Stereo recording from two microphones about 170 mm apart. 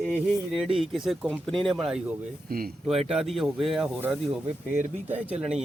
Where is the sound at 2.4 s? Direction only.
60° right (ahead or behind).